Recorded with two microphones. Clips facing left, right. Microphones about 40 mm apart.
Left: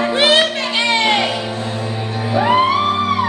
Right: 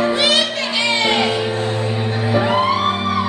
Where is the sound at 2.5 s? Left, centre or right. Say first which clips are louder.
Left 3 dB; left.